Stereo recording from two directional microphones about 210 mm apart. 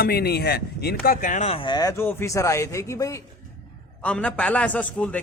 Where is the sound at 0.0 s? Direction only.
50° left (ahead or behind).